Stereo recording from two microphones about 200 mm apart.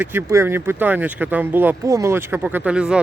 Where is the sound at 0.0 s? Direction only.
10° right (ahead or behind).